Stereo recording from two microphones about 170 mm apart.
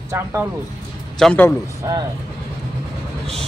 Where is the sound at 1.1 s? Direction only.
5° left (ahead or behind).